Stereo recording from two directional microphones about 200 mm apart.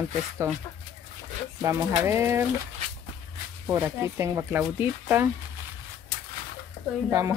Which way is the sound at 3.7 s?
10° right (ahead or behind).